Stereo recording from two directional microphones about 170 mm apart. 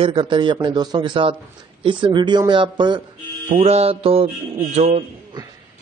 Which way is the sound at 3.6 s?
35° right (ahead or behind).